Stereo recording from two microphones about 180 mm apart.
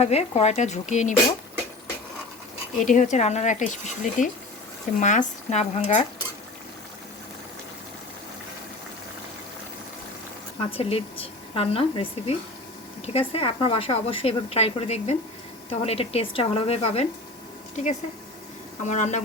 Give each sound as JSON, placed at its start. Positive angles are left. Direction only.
{"t": 0.0, "sound": "speech", "side_deg": 35}
{"t": 2.8, "sound": "speech", "side_deg": 45}
{"t": 10.6, "sound": "speech", "side_deg": 30}
{"t": 18.9, "sound": "speech", "side_deg": 40}